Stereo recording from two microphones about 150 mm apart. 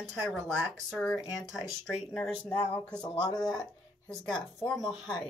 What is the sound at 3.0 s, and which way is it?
Speech, 30° left (ahead or behind).